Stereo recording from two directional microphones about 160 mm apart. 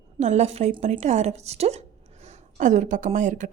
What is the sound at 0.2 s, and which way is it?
A woman's voice, 45° right (ahead or behind).